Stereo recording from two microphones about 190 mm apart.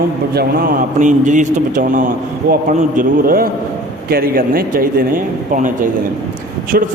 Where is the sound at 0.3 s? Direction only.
50° right (ahead or behind).